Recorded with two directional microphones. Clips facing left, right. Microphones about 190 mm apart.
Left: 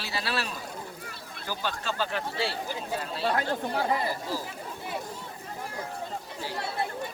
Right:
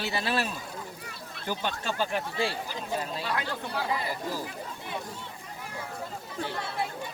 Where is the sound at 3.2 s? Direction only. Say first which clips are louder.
Left 5 dB; 45° left (ahead or behind).